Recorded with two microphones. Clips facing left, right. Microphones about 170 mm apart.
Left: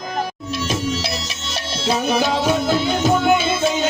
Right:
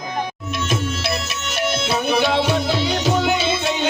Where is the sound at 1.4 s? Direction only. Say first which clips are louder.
Right 3 dB; 30° left (ahead or behind); by 3.8 s 50° left (ahead or behind).